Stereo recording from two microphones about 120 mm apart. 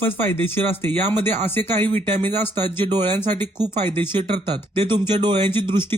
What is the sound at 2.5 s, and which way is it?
A man's voice, 40° right (ahead or behind).